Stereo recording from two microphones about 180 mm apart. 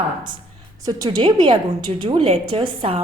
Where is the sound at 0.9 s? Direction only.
20° right (ahead or behind).